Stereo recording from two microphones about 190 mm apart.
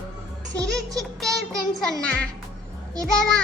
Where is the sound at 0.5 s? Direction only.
20° right (ahead or behind).